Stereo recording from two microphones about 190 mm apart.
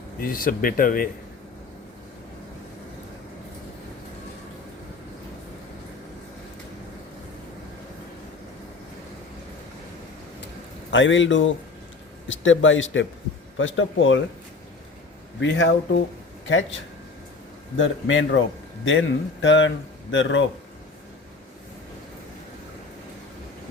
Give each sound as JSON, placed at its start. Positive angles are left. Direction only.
{"t": 0.2, "sound": "speech", "side_deg": 50}
{"t": 10.9, "sound": "speech", "side_deg": 75}
{"t": 15.4, "sound": "speech", "side_deg": 75}
{"t": 17.7, "sound": "a man's voice", "side_deg": 90}